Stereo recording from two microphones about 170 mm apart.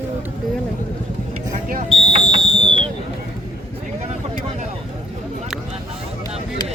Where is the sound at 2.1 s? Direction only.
35° right (ahead or behind).